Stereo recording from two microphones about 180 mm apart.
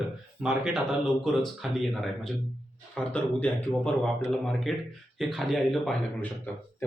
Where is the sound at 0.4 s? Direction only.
Centre (ahead or behind).